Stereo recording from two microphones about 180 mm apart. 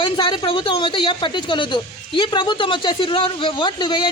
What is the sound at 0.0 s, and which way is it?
Speech, 25° left (ahead or behind).